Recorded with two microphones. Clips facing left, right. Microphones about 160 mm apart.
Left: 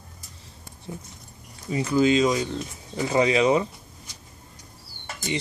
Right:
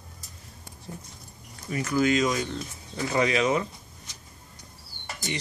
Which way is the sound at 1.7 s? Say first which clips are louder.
Left 4 dB; 20° left (ahead or behind).